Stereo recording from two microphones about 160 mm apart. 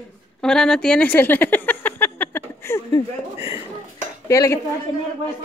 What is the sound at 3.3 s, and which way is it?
Speech, 20° right (ahead or behind).